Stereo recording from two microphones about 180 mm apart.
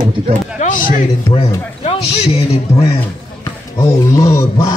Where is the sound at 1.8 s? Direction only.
35° left (ahead or behind).